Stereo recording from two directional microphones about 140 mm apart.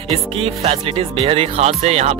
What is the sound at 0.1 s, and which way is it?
Speech, 45° right (ahead or behind).